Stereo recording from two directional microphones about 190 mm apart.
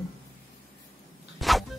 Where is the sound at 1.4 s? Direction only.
Centre (ahead or behind).